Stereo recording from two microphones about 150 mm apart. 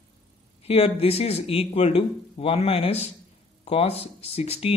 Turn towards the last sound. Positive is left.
turn(degrees=45)  # may be behind; listen again after turning